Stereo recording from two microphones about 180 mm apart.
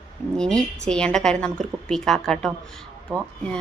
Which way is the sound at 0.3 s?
5° left (ahead or behind).